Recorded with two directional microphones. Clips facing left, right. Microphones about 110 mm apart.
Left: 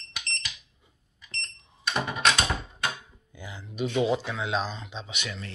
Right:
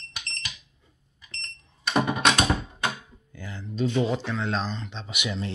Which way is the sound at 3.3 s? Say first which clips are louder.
Right 3 dB; 15° left (ahead or behind).